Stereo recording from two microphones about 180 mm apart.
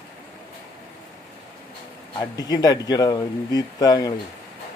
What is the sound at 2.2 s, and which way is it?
Speech, 20° left (ahead or behind).